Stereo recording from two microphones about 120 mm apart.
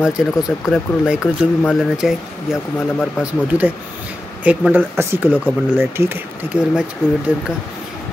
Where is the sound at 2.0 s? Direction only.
5° right (ahead or behind).